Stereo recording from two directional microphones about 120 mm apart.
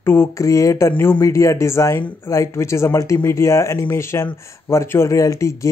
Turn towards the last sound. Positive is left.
turn(degrees=25)  # may be behind; listen again after turning